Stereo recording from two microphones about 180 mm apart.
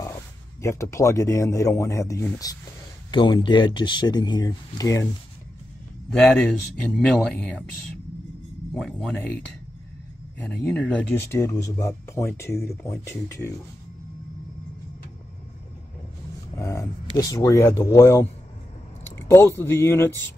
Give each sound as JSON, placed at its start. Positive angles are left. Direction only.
{"t": 0.6, "sound": "speech", "side_deg": 15}
{"t": 6.0, "sound": "a man's voice", "side_deg": 5}
{"t": 8.7, "sound": "speech", "side_deg": 5}
{"t": 10.4, "sound": "speech", "side_deg": 5}
{"t": 16.5, "sound": "speech", "side_deg": 15}